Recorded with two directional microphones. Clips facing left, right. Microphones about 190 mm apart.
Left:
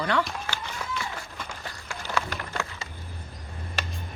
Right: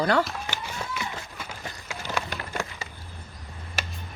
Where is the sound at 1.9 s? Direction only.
15° right (ahead or behind).